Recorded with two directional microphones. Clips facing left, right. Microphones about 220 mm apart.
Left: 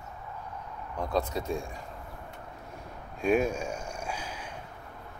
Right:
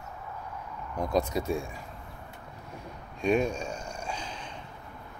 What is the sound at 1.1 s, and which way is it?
Speech, 10° right (ahead or behind).